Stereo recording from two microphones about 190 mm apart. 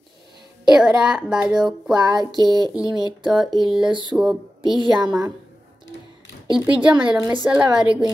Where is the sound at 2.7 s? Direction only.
5° right (ahead or behind).